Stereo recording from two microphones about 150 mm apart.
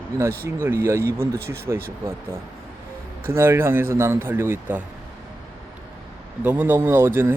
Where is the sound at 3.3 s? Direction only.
15° right (ahead or behind).